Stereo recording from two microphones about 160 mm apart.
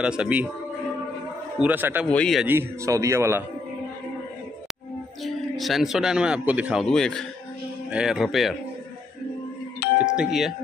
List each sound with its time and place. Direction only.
0.0 s speech: 5° right (ahead or behind)
1.6 s speech: 10° right (ahead or behind)
2.0 s speech: 5° left (ahead or behind)
2.4 s speech: 15° right (ahead or behind)
5.2 s speech: centre (ahead or behind)
9.8 s doorbell: 85° left
10.1 s speech: centre (ahead or behind)